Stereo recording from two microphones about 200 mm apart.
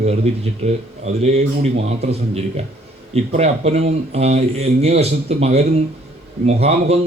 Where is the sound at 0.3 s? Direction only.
30° right (ahead or behind).